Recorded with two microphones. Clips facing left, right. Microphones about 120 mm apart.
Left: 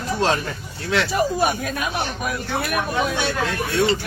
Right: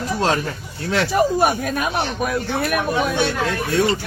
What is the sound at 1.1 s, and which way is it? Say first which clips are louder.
Speech: right 6 dB; 50° right (ahead or behind).